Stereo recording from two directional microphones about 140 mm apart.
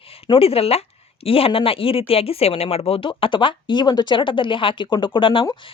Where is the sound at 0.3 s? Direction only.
45° left (ahead or behind).